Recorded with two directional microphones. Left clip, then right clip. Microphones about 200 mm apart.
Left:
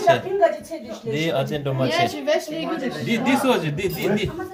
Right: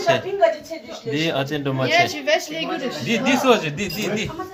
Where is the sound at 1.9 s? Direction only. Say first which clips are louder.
Right 4 dB; 25° left (ahead or behind).